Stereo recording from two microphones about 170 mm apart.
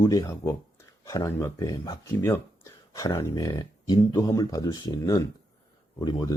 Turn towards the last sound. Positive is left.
turn(degrees=25)  # may be behind; listen again after turning